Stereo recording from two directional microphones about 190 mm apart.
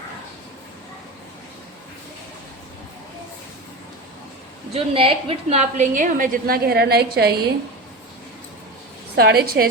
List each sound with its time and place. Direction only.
4.7 s a woman's voice: 30° right (ahead or behind); by 7.3 s 55° right (ahead or behind)
9.1 s a woman's voice: 55° right (ahead or behind)